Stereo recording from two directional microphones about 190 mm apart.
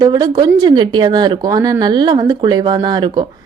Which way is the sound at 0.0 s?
20° right (ahead or behind).